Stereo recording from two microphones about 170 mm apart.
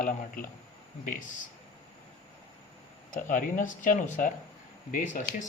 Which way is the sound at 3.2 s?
50° left (ahead or behind).